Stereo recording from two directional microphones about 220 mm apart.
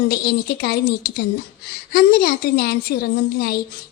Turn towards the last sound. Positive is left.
turn(degrees=45)  # may be behind; listen again after turning